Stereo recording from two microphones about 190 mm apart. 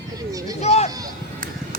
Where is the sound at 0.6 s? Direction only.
35° left (ahead or behind).